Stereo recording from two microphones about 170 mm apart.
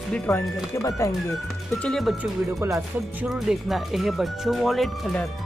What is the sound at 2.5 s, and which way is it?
Speech, 15° right (ahead or behind).